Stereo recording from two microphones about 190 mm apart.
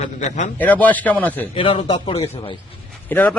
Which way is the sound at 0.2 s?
40° left (ahead or behind).